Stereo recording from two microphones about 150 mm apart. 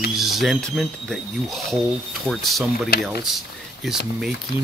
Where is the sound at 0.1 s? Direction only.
Centre (ahead or behind).